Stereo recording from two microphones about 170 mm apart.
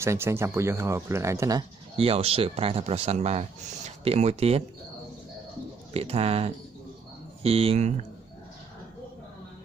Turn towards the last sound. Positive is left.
turn(degrees=-40)  # may be behind; listen again after turning